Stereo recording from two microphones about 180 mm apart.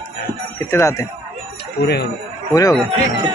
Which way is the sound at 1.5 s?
65° left (ahead or behind).